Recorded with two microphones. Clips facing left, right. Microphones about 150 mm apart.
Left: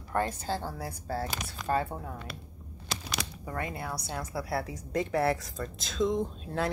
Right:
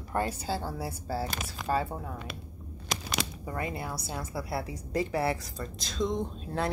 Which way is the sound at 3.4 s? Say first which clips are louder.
Right 1 dB; 5° right (ahead or behind).